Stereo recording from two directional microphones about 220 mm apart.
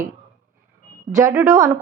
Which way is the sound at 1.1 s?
10° right (ahead or behind).